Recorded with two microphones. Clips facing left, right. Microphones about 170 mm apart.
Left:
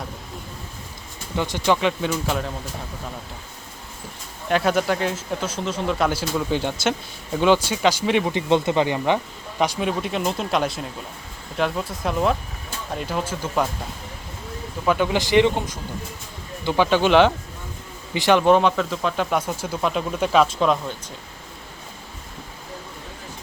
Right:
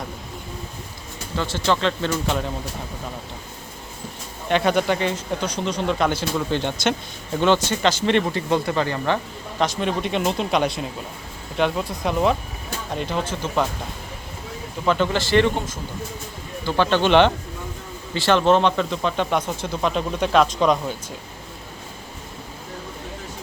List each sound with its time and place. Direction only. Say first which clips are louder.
1.4 s speech: left 1 dB; 15° left (ahead or behind)
4.4 s speech: right 1 dB; 5° left (ahead or behind)
8.3 s speech: left 2 dB; 20° left (ahead or behind)
14.8 s speech: even; 10° left (ahead or behind)
18.1 s speech: left 1 dB; 15° left (ahead or behind)